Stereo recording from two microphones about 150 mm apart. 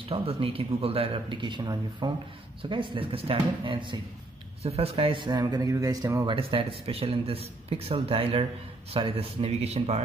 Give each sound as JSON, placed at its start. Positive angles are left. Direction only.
{"t": 0.1, "sound": "speech", "side_deg": -40}
{"t": 5.2, "sound": "speech", "side_deg": -30}
{"t": 6.2, "sound": "speech", "side_deg": -35}